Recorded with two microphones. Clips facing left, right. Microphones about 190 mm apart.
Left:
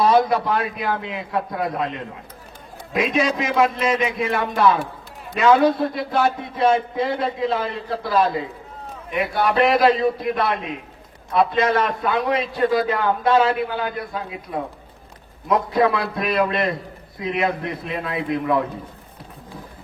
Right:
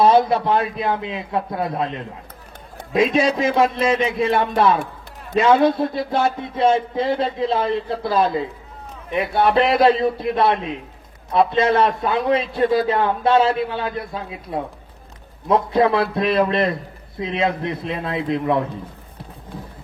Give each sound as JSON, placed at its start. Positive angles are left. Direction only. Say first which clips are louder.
{"t": 0.0, "sound": "a man's voice", "louder": "right 2 dB", "side_deg": -30}